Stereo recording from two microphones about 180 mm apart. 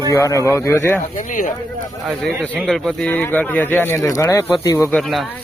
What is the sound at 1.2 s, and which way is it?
Speech, 45° left (ahead or behind).